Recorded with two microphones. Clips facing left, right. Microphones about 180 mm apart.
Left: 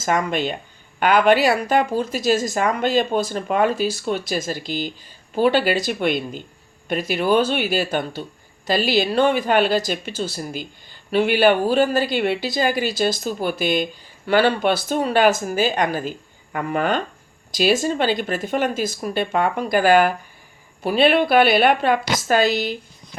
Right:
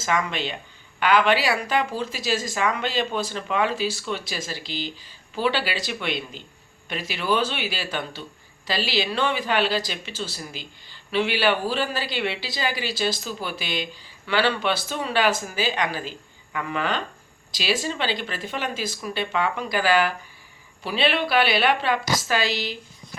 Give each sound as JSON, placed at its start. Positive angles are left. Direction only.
{"t": 0.0, "sound": "a woman's voice", "side_deg": 45}